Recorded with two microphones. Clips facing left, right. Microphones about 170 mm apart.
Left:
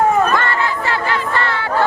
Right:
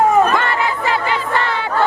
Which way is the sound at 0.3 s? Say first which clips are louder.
Even; 15° right (ahead or behind).